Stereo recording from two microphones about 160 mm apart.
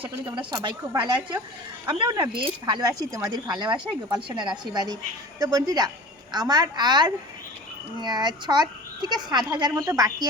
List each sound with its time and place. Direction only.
0.0 s a woman's voice: 30° right (ahead or behind)